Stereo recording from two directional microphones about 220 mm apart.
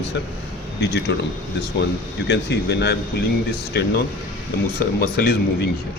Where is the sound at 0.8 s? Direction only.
50° left (ahead or behind).